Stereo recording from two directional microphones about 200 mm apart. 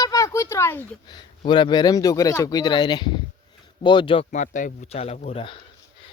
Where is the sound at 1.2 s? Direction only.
25° left (ahead or behind).